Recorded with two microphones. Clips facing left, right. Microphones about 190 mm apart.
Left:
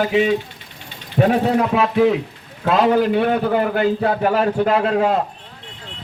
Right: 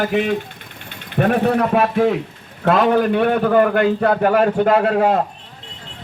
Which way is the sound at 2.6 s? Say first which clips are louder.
Right 1 dB; 60° right (ahead or behind).